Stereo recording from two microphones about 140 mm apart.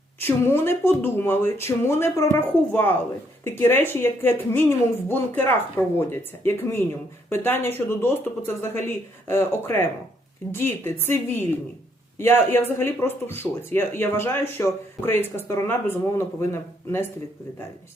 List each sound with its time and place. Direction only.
0.2 s speech: 15° left (ahead or behind)